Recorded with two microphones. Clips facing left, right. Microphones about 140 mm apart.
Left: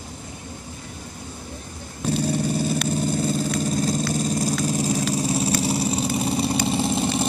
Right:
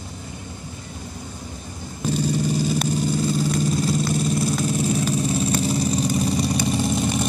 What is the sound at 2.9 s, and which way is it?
Vehicle, 50° left (ahead or behind).